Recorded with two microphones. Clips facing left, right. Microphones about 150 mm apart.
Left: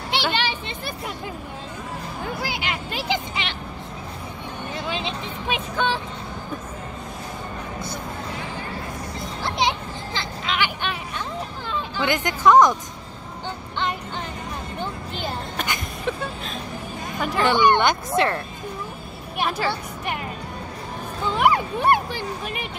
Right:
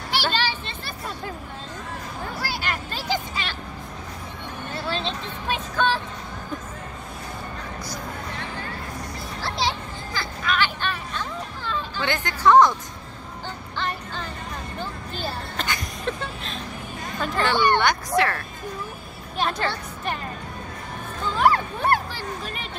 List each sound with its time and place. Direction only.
0.1 s music: 20° left (ahead or behind)
2.4 s music: 15° left (ahead or behind)
4.7 s vehicle: 15° left (ahead or behind)
9.4 s a sound: 20° left (ahead or behind)
13.7 s music: 20° left (ahead or behind)
14.8 s vehicle: 20° left (ahead or behind)
17.2 s speech: 15° left (ahead or behind)
19.3 s music: 10° left (ahead or behind)
21.4 s music: 15° left (ahead or behind)